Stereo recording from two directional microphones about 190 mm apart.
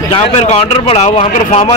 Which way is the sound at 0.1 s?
35° left (ahead or behind).